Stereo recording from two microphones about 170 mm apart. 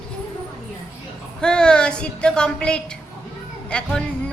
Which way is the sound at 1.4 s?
5° left (ahead or behind).